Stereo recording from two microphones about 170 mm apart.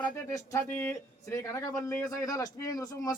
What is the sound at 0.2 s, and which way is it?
Speech, 15° left (ahead or behind).